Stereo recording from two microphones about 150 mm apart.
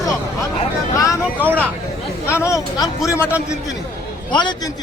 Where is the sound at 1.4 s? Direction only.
10° right (ahead or behind).